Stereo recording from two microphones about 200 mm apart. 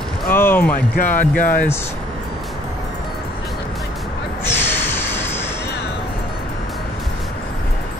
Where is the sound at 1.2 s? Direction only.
40° left (ahead or behind).